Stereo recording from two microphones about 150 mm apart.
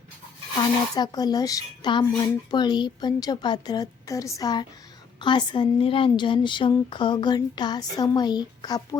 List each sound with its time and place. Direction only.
0.9 s speech: 25° left (ahead or behind)